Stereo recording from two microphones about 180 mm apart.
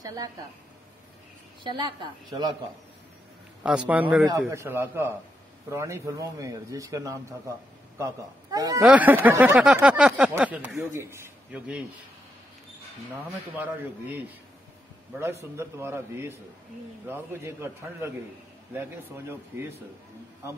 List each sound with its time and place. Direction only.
0.0 s speech: 20° right (ahead or behind)
1.6 s speech: 25° right (ahead or behind)
3.6 s speech: 5° right (ahead or behind)
8.8 s a man's voice: 10° right (ahead or behind)
15.1 s speech: 15° right (ahead or behind)